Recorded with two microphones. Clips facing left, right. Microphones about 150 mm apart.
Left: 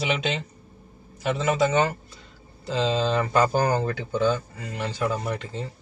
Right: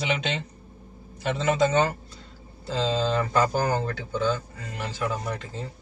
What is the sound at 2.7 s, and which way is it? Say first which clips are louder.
Speech: left 1 dB; 15° left (ahead or behind).